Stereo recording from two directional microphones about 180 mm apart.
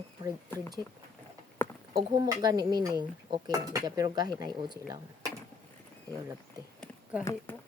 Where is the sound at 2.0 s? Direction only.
25° right (ahead or behind).